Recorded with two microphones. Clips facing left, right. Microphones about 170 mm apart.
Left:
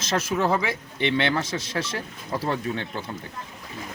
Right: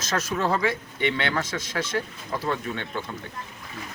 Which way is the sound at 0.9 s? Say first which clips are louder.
Left 6 dB; 25° left (ahead or behind).